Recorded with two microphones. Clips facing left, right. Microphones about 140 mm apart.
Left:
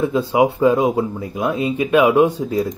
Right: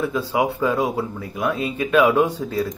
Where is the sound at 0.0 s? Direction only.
20° left (ahead or behind).